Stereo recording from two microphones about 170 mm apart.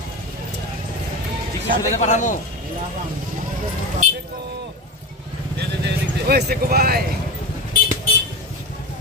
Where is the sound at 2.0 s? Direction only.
45° left (ahead or behind).